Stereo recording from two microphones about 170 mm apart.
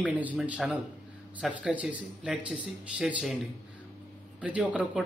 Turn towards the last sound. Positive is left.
turn(degrees=-10)  # may be behind; listen again after turning